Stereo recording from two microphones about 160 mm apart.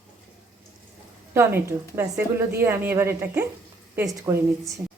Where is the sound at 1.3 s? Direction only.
15° right (ahead or behind).